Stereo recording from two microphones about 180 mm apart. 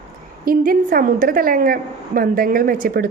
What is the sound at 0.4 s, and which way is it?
A woman's voice, 55° right (ahead or behind).